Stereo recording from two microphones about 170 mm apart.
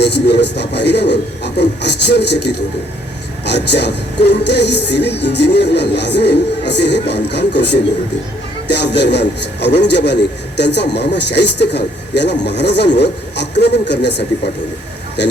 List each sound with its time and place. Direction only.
0.0 s a man's voice: 85° left